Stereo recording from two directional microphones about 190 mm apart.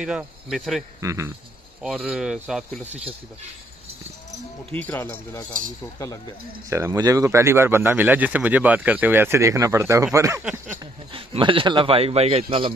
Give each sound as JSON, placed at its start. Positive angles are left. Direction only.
{"t": 0.0, "sound": "speech", "side_deg": -5}
{"t": 1.0, "sound": "speech", "side_deg": -15}
{"t": 1.8, "sound": "speech", "side_deg": -5}
{"t": 2.8, "sound": "speech", "side_deg": -35}
{"t": 4.7, "sound": "speech", "side_deg": 10}
{"t": 6.7, "sound": "speech", "side_deg": -15}
{"t": 10.8, "sound": "a man's voice", "side_deg": -25}